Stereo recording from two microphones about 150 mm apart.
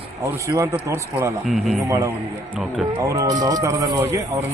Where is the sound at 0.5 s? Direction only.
15° right (ahead or behind).